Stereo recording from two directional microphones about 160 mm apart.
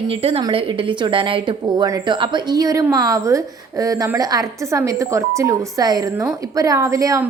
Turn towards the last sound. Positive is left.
turn(degrees=-20)  # may be behind; listen again after turning